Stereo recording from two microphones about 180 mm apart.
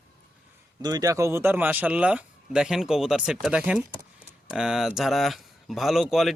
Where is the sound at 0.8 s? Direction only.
20° right (ahead or behind).